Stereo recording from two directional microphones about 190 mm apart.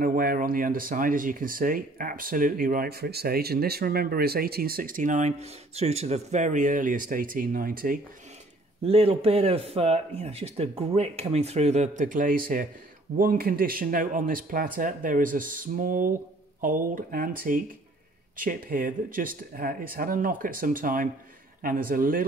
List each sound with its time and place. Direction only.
0.0 s speech: 50° right (ahead or behind)
8.8 s speech: 30° right (ahead or behind); by 22.2 s 50° right (ahead or behind)